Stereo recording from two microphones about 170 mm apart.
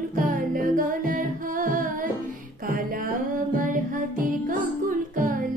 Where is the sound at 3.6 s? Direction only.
55° right (ahead or behind).